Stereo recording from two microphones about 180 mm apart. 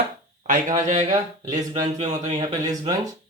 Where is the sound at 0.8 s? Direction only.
40° right (ahead or behind).